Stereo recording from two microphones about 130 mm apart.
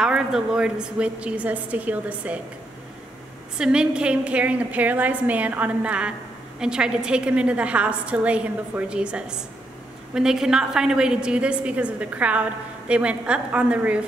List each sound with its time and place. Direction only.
0.0 s a woman's voice: 5° right (ahead or behind)
3.5 s a woman's voice: 5° right (ahead or behind)